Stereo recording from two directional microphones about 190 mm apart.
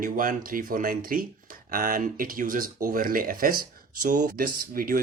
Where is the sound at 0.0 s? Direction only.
45° right (ahead or behind).